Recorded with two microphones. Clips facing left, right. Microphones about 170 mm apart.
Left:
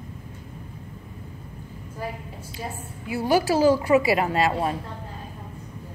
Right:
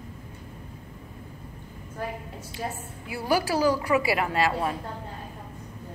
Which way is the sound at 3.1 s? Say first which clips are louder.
Left 4 dB; 20° left (ahead or behind).